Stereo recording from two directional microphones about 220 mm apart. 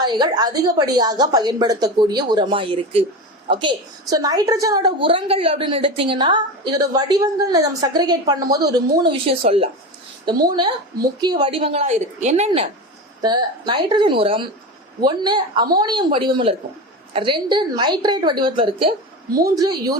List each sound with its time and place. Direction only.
0.0 s a woman's voice: 20° right (ahead or behind)